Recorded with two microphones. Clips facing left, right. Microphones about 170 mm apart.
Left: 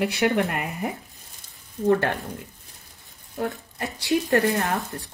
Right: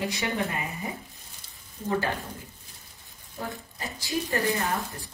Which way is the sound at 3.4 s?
65° left (ahead or behind).